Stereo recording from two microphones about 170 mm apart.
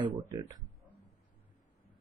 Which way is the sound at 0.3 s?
20° right (ahead or behind).